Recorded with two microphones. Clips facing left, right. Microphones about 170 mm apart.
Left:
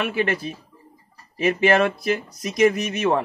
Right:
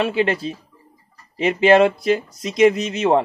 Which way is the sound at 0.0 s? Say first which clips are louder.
Right 4 dB; 25° right (ahead or behind).